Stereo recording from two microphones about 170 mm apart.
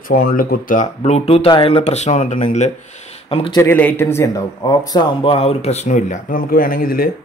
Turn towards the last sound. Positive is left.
turn(degrees=60)  # may be behind; listen again after turning